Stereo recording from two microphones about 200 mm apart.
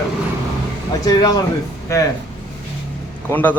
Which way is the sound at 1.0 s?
20° left (ahead or behind).